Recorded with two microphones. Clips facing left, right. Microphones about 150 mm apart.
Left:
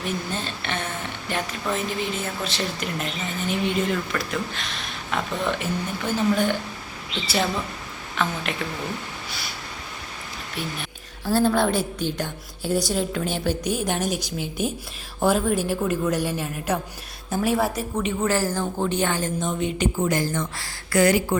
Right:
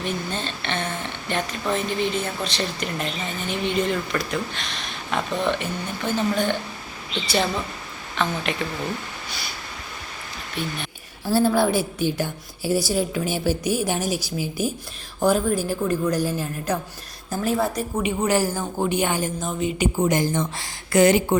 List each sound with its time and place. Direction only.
0.0 s a woman's voice: 10° left (ahead or behind)
8.1 s a woman's voice: 5° left (ahead or behind)
10.6 s a woman's voice: 5° left (ahead or behind)
11.3 s a woman's voice: 10° right (ahead or behind)
18.0 s a woman's voice: 15° right (ahead or behind)
20.0 s speech: 20° right (ahead or behind)